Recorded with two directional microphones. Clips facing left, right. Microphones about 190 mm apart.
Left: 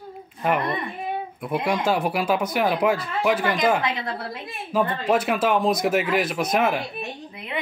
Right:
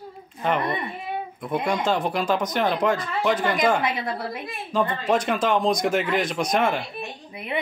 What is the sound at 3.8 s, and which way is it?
Speech, 20° right (ahead or behind).